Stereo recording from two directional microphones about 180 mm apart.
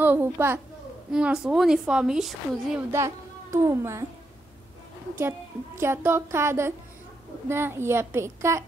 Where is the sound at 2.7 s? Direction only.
15° right (ahead or behind).